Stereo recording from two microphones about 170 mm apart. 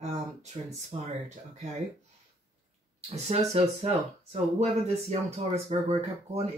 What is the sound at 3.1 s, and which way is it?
Speech, 40° right (ahead or behind).